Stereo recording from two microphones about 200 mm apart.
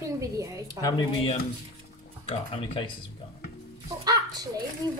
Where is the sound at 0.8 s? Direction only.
25° left (ahead or behind).